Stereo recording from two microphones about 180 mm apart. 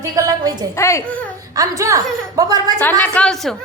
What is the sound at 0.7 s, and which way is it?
Speech, 15° left (ahead or behind).